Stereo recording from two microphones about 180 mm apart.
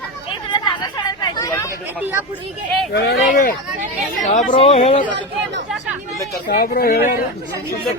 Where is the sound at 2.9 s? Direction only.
60° left (ahead or behind).